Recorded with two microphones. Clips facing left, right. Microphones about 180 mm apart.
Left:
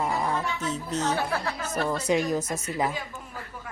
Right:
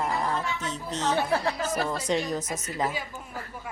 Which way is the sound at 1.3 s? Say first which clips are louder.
Right 3 dB; 30° right (ahead or behind).